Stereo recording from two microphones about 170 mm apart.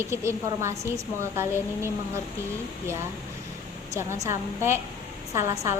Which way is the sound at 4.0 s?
15° right (ahead or behind).